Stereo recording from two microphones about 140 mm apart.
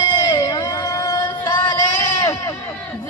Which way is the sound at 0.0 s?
30° left (ahead or behind).